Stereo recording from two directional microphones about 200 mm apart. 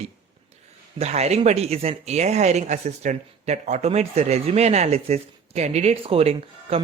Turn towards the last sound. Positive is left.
turn(degrees=-30)  # may be behind; listen again after turning